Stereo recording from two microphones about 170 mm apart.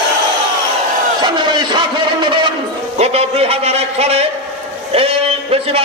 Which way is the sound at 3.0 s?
35° right (ahead or behind).